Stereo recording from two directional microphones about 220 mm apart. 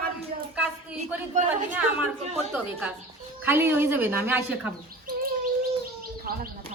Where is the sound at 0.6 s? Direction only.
5° right (ahead or behind).